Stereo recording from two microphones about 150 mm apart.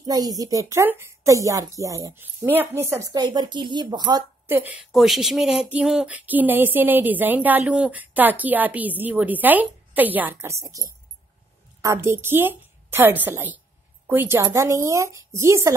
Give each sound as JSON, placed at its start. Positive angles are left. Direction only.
{"t": 0.0, "sound": "speech", "side_deg": -25}
{"t": 4.5, "sound": "speech", "side_deg": -15}
{"t": 4.9, "sound": "speech", "side_deg": 0}